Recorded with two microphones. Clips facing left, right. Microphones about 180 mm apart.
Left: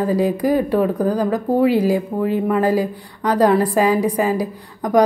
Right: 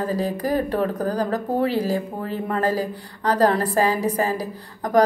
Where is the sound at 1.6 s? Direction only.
15° left (ahead or behind).